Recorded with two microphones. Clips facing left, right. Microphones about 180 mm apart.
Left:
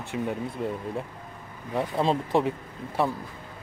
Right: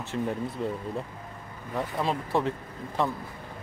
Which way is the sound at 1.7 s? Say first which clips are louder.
Left 4 dB; 25° left (ahead or behind).